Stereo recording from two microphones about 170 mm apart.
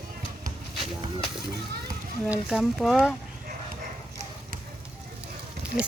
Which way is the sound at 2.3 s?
5° right (ahead or behind).